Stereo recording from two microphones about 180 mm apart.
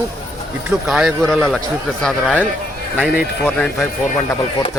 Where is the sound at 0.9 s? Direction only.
5° right (ahead or behind).